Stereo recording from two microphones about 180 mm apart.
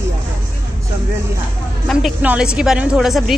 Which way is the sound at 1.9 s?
5° right (ahead or behind).